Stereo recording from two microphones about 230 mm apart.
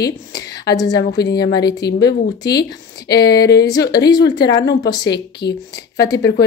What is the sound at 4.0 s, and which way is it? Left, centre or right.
Speech, centre.